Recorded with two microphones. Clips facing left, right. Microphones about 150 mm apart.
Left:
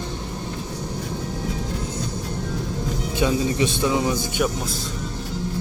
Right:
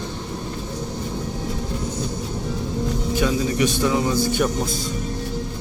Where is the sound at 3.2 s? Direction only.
25° left (ahead or behind).